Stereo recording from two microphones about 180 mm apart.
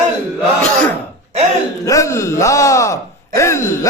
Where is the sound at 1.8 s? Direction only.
20° left (ahead or behind).